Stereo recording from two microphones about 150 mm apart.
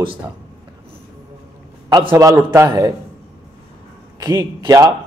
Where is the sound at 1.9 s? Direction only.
25° right (ahead or behind).